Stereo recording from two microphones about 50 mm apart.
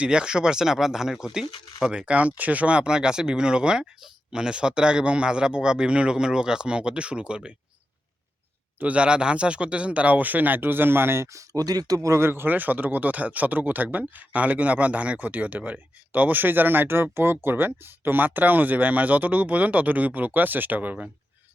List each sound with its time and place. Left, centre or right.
0.0 s speech: centre
8.8 s speech: right
12.3 s speech: right